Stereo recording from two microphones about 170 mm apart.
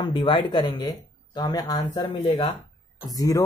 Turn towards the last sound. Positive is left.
turn(degrees=20)  # may be behind; listen again after turning